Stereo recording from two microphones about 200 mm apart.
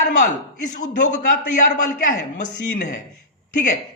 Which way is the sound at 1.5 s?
40° left (ahead or behind).